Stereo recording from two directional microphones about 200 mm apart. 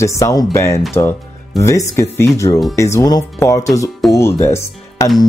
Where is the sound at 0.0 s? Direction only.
15° left (ahead or behind).